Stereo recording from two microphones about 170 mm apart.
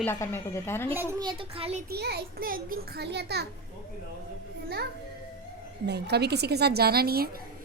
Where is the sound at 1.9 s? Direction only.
70° right (ahead or behind).